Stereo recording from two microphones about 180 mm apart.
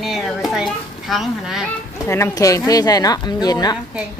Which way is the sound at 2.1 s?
15° left (ahead or behind).